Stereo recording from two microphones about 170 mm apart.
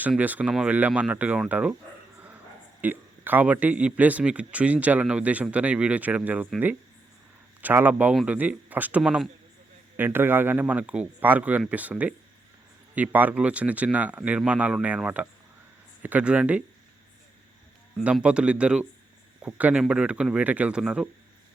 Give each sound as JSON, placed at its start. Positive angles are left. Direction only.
{"t": 0.0, "sound": "speech", "side_deg": -10}
{"t": 2.8, "sound": "speech", "side_deg": -10}
{"t": 18.0, "sound": "speech", "side_deg": -5}